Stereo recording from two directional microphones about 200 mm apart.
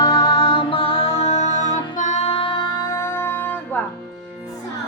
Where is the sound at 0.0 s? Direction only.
15° left (ahead or behind).